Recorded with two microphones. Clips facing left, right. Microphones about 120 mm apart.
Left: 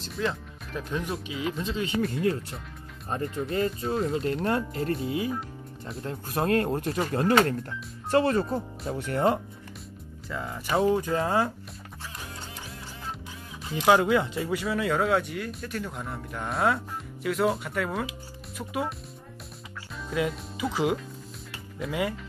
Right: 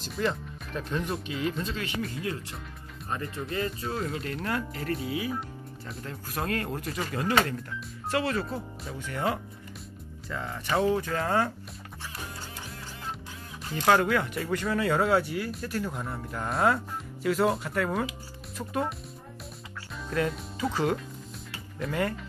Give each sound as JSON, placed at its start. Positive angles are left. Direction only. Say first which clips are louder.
{"t": 0.0, "sound": "speech", "louder": "right 1 dB", "side_deg": 0}
{"t": 1.6, "sound": "speech", "louder": "left 3 dB", "side_deg": 20}
{"t": 3.8, "sound": "speech", "louder": "left 4 dB", "side_deg": 0}
{"t": 4.1, "sound": "speech", "louder": "left 5 dB", "side_deg": 30}
{"t": 8.8, "sound": "speech", "louder": "left 6 dB", "side_deg": 60}
{"t": 9.1, "sound": "speech", "louder": "left 5 dB", "side_deg": 40}
{"t": 10.3, "sound": "speech", "louder": "left 1 dB", "side_deg": 5}
{"t": 13.7, "sound": "speech", "louder": "left 2 dB", "side_deg": 15}
{"t": 14.5, "sound": "speech", "louder": "right 1 dB", "side_deg": 5}
{"t": 20.1, "sound": "speech", "louder": "even", "side_deg": 5}